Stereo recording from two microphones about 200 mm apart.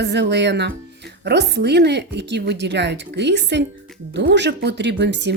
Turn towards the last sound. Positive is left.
turn(degrees=-60)  # may be behind; listen again after turning